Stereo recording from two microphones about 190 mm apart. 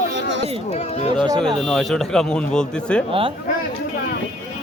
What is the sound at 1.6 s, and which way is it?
Speech, 5° left (ahead or behind).